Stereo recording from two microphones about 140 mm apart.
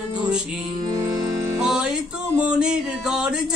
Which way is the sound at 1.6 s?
5° right (ahead or behind).